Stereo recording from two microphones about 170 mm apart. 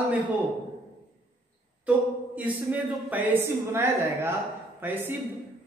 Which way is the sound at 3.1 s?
10° right (ahead or behind).